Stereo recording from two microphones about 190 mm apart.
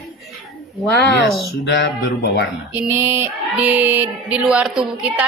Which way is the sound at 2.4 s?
5° right (ahead or behind).